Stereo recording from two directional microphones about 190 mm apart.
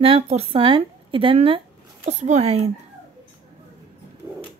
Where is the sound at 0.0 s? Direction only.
30° right (ahead or behind).